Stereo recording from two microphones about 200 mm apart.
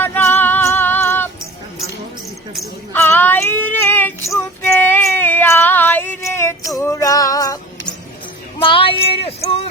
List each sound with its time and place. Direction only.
0.0 s music: 10° left (ahead or behind)
2.9 s child singing: 10° left (ahead or behind)
6.7 s music: 15° left (ahead or behind)
8.5 s a sound: 25° left (ahead or behind)